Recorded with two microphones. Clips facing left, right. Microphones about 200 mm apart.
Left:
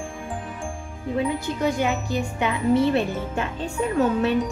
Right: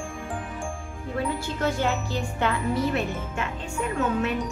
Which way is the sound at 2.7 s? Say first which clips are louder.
Left 6 dB; 30° left (ahead or behind).